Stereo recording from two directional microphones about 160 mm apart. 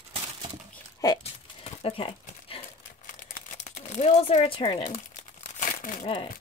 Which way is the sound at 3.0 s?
50° left (ahead or behind).